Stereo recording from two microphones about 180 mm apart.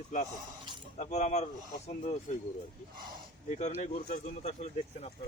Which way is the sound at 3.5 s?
40° left (ahead or behind).